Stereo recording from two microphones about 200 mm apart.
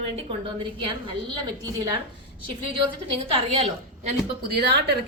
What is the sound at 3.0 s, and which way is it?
Speech, 30° right (ahead or behind).